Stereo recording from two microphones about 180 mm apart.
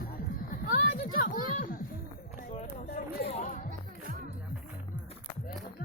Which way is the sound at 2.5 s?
35° left (ahead or behind).